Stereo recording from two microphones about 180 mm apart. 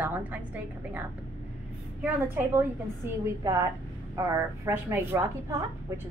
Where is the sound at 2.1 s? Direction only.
15° right (ahead or behind).